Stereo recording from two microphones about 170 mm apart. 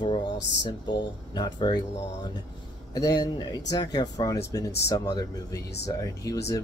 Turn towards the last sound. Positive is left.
turn(degrees=20)  # may be behind; listen again after turning